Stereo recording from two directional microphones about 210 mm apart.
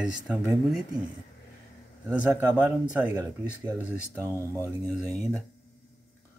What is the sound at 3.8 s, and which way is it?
Speech, 15° right (ahead or behind).